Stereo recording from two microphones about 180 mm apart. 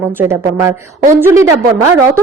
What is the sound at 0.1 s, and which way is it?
A woman's voice, 15° right (ahead or behind).